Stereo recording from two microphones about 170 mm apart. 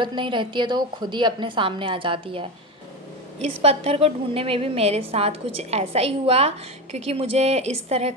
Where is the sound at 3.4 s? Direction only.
35° right (ahead or behind).